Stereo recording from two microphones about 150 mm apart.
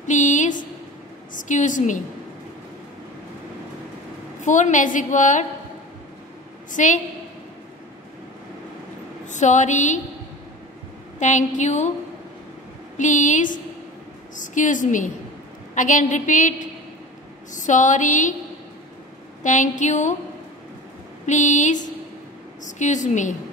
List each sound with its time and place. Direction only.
0.0 s a sound: 55° left (ahead or behind)
1.3 s a woman's voice: 60° left (ahead or behind)
4.4 s a woman's voice: 55° left (ahead or behind)
6.7 s a woman's voice: 55° left (ahead or behind)
9.2 s a woman's voice: 55° left (ahead or behind)
11.1 s a woman's voice: 55° left (ahead or behind)
12.9 s a woman's voice: 55° left (ahead or behind)
19.4 s a woman's voice: 55° left (ahead or behind)
21.3 s a woman's voice: 55° left (ahead or behind)